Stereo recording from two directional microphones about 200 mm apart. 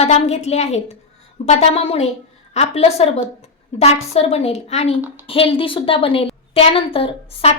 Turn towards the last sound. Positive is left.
turn(degrees=30)  # may be behind; listen again after turning